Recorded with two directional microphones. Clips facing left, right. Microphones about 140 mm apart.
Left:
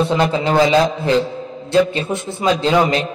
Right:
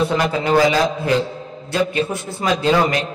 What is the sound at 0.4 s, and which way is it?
A man's voice, 25° left (ahead or behind).